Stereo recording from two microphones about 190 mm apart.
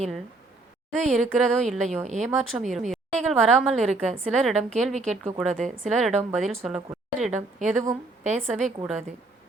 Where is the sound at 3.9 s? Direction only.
35° right (ahead or behind).